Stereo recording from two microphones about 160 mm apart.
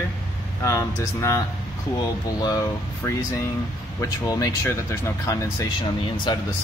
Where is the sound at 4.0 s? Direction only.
20° left (ahead or behind).